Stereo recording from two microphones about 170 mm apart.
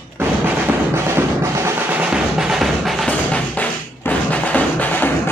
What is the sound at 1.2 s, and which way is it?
Music, 15° right (ahead or behind).